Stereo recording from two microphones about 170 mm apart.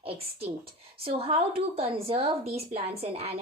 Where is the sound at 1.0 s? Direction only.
35° right (ahead or behind).